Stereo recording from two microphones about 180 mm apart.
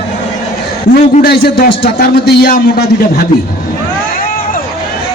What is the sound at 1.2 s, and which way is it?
A man's voice, 60° left (ahead or behind).